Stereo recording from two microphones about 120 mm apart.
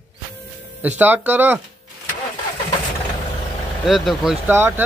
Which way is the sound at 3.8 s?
Centre (ahead or behind).